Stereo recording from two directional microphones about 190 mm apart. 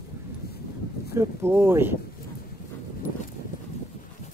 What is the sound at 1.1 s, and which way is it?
Speech, 15° right (ahead or behind).